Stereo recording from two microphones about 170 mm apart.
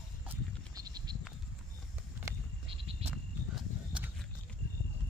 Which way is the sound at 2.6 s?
35° right (ahead or behind).